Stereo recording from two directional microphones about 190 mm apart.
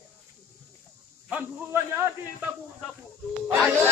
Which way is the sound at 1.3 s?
10° right (ahead or behind).